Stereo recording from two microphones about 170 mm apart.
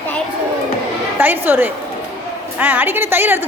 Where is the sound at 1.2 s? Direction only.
10° right (ahead or behind).